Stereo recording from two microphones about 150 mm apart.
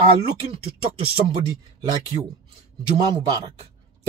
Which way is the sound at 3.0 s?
35° right (ahead or behind).